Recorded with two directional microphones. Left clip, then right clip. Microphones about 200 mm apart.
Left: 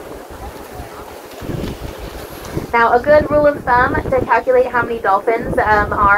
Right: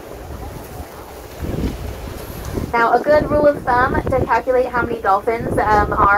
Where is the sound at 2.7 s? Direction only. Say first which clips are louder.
Left 3 dB; 25° right (ahead or behind).